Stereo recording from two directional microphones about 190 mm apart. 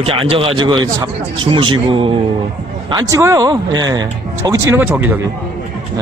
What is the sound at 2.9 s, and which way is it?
Speech, 15° right (ahead or behind).